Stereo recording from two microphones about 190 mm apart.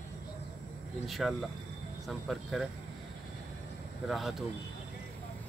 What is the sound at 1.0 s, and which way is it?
Speech, centre (ahead or behind).